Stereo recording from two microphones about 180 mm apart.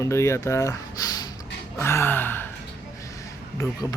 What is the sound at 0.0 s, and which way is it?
Speech, 15° left (ahead or behind).